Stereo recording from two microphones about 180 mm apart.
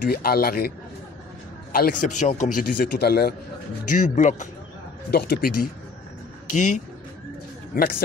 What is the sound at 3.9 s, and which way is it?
Speech, 45° left (ahead or behind).